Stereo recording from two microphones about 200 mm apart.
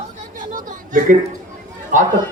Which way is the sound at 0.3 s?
40° right (ahead or behind).